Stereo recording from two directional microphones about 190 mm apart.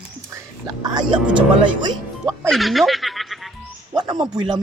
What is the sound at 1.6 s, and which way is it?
Speech, 25° right (ahead or behind).